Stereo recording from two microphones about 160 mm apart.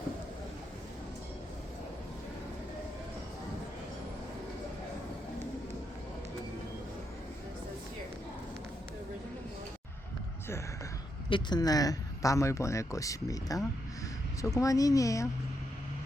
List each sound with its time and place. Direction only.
11.3 s speech: 30° left (ahead or behind)